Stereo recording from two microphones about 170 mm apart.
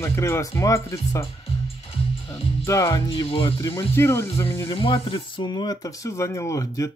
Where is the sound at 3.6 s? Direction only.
15° left (ahead or behind).